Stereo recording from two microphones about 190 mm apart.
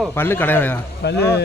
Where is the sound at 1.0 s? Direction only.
60° left (ahead or behind).